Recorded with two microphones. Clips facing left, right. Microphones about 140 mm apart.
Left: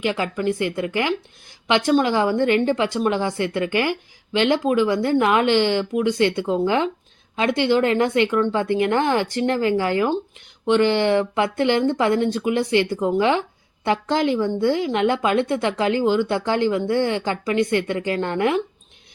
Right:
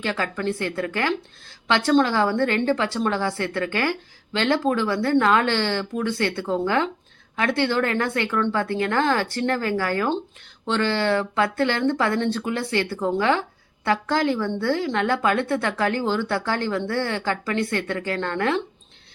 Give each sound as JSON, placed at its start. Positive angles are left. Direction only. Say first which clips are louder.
{"t": 0.0, "sound": "speech", "louder": "left 3 dB", "side_deg": 15}